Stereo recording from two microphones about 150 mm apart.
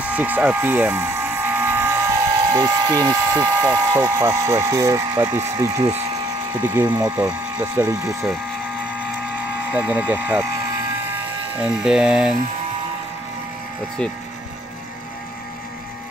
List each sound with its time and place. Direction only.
0.0 s a sound: 10° right (ahead or behind)
3.3 s speech: 15° right (ahead or behind)
9.7 s speech: 10° right (ahead or behind)
11.6 s speech: 5° right (ahead or behind)